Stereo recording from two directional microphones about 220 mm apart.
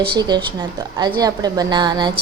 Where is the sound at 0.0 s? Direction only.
20° right (ahead or behind).